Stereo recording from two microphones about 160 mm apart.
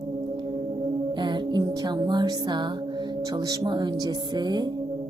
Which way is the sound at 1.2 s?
30° right (ahead or behind).